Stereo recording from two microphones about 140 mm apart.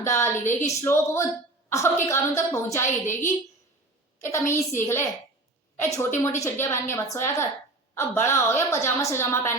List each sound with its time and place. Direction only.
0.0 s a woman's voice: 20° left (ahead or behind)